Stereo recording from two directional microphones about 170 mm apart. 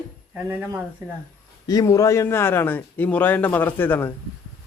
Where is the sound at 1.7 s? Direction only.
20° left (ahead or behind).